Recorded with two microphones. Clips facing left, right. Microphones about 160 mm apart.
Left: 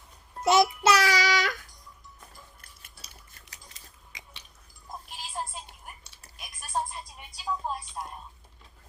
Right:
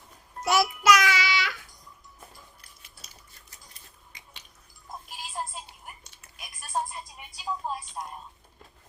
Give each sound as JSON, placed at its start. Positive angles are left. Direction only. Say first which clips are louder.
{"t": 0.4, "sound": "music", "louder": "left 1 dB", "side_deg": 20}
{"t": 3.5, "sound": "scissors", "louder": "left 2 dB", "side_deg": 90}
{"t": 6.8, "sound": "music", "louder": "even", "side_deg": 0}
{"t": 8.0, "sound": "a sound", "louder": "even", "side_deg": -5}